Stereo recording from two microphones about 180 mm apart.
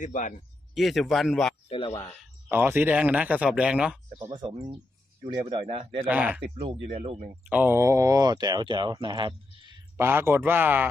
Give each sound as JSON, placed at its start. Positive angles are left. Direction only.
{"t": 0.0, "sound": "a man's voice", "side_deg": 45}
{"t": 0.7, "sound": "a man's voice", "side_deg": 0}
{"t": 2.5, "sound": "speech", "side_deg": -10}
{"t": 4.2, "sound": "a man's voice", "side_deg": -30}
{"t": 6.1, "sound": "speech", "side_deg": -5}
{"t": 6.5, "sound": "a man's voice", "side_deg": -35}
{"t": 7.4, "sound": "speech", "side_deg": -10}
{"t": 10.0, "sound": "speech", "side_deg": -10}